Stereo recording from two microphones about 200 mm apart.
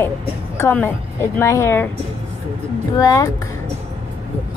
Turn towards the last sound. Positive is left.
turn(degrees=15)  # may be behind; listen again after turning